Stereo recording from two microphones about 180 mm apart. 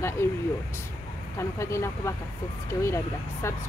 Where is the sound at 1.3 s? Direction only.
15° left (ahead or behind).